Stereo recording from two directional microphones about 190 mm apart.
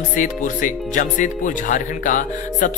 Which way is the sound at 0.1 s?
45° left (ahead or behind).